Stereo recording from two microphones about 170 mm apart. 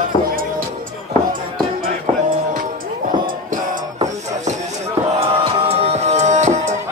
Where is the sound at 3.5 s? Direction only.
45° right (ahead or behind).